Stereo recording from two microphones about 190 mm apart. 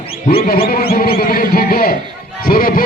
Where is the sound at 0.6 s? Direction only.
50° left (ahead or behind).